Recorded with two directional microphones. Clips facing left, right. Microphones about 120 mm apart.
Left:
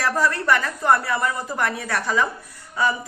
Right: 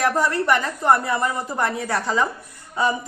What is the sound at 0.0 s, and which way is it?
A man's voice, 20° right (ahead or behind).